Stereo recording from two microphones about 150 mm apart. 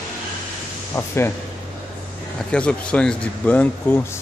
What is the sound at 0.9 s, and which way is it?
Speech, 15° left (ahead or behind).